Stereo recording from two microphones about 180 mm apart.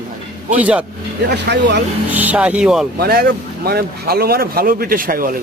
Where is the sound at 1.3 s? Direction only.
70° right (ahead or behind).